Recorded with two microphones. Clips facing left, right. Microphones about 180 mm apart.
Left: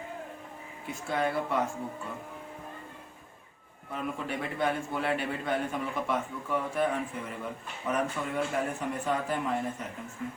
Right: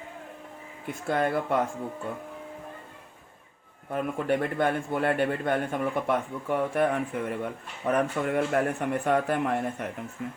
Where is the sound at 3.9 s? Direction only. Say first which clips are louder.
Right 7 dB; 55° right (ahead or behind).